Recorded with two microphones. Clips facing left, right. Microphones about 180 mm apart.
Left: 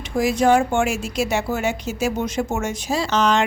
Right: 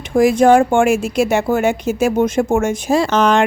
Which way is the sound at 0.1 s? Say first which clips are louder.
Right 6 dB; 50° right (ahead or behind).